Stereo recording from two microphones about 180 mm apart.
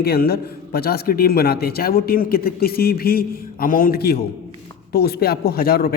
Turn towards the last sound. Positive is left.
turn(degrees=55)  # may be behind; listen again after turning